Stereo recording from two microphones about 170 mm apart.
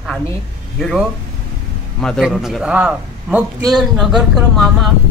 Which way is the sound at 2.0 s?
Centre (ahead or behind).